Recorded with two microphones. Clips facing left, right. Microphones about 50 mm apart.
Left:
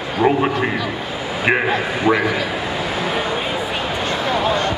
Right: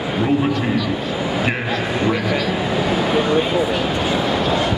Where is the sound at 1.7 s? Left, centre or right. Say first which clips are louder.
Left 2 dB; centre.